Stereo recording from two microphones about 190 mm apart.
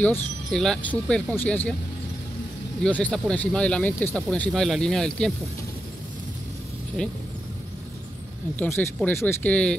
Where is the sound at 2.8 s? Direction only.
5° left (ahead or behind).